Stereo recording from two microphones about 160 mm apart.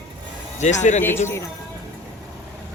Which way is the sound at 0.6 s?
50° left (ahead or behind).